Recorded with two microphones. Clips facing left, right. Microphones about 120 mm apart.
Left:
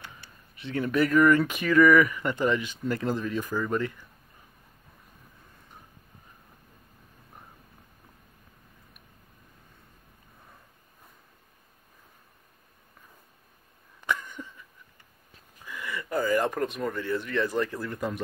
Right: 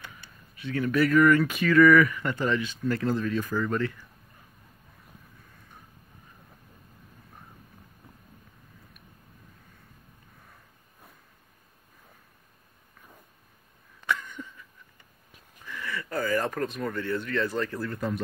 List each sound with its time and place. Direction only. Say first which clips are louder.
0.6 s speech: right 1 dB; 25° left (ahead or behind)
14.0 s a sound: even; 15° left (ahead or behind)
15.6 s speech: even; 15° left (ahead or behind)